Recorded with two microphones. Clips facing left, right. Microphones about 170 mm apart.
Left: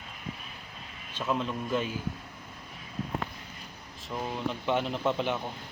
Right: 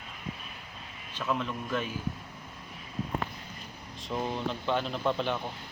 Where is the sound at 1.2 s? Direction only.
15° left (ahead or behind).